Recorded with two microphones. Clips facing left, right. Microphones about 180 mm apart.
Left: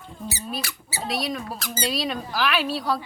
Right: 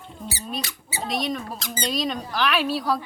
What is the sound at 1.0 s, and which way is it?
Speech, centre (ahead or behind).